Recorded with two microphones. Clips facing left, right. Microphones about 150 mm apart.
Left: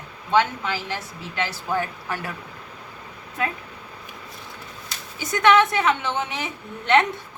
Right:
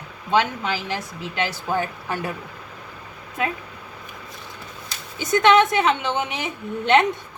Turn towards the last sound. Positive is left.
turn(degrees=-20)  # may be behind; listen again after turning